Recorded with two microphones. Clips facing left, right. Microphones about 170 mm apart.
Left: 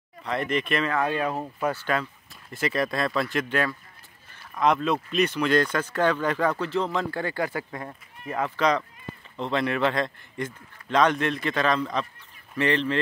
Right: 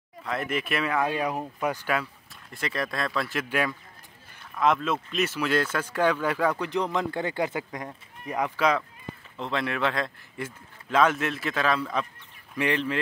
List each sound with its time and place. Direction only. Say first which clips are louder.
0.2 s speech: left 3 dB; centre (ahead or behind)
2.5 s a man's voice: left 4 dB; centre (ahead or behind)